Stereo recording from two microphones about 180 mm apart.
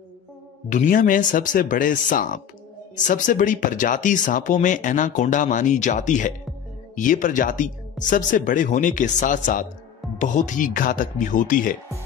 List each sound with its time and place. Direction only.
0.7 s speech: 50° left (ahead or behind)